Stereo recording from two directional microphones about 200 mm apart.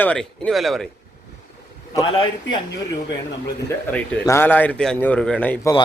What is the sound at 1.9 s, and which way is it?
Speech, 25° left (ahead or behind).